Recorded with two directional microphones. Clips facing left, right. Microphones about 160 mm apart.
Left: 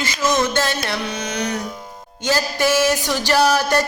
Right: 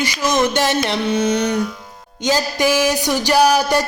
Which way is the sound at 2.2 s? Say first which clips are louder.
Right 2 dB; 15° right (ahead or behind).